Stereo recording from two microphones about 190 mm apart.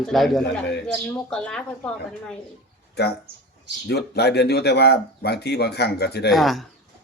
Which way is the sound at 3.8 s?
60° left (ahead or behind).